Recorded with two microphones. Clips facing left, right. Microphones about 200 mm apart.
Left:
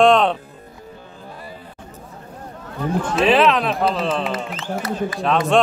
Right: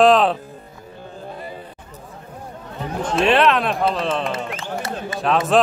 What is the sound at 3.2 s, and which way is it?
A man's voice, centre (ahead or behind).